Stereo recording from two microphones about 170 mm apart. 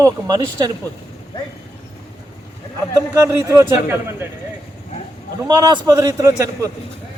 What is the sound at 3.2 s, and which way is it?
A man's voice, 15° right (ahead or behind).